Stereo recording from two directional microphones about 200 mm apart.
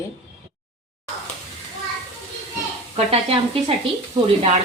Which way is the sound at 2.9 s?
30° right (ahead or behind).